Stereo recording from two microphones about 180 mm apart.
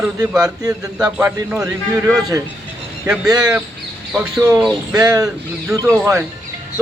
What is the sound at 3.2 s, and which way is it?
Speech, 20° right (ahead or behind).